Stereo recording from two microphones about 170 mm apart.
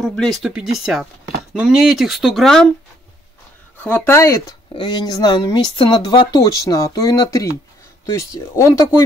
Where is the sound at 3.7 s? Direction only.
10° left (ahead or behind).